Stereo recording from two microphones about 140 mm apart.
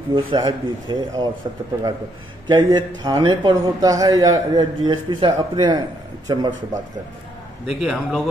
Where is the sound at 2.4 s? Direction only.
35° right (ahead or behind).